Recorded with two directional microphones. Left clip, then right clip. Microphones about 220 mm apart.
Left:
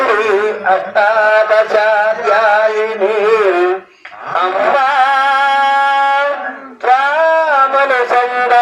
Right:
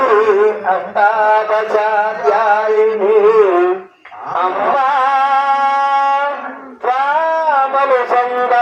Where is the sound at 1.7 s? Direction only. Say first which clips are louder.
Even; 30° left (ahead or behind).